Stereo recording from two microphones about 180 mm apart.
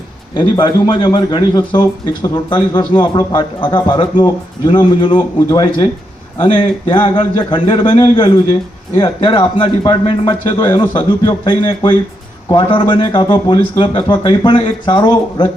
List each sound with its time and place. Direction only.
0.3 s a man's voice: 25° left (ahead or behind)